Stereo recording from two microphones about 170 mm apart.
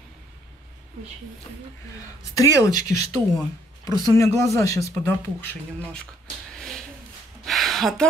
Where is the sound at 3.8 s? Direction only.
15° left (ahead or behind).